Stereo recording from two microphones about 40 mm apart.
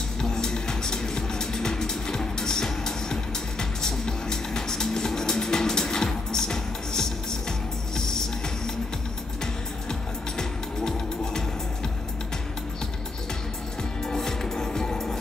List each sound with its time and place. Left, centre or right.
0.2 s music: centre
9.4 s music: centre
14.0 s music: centre